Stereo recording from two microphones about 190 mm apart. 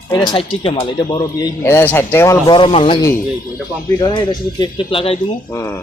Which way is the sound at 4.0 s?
25° left (ahead or behind).